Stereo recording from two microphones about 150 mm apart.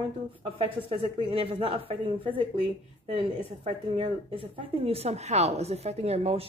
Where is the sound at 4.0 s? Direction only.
35° right (ahead or behind).